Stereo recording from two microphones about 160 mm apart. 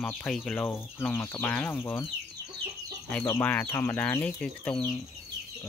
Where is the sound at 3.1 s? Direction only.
15° left (ahead or behind).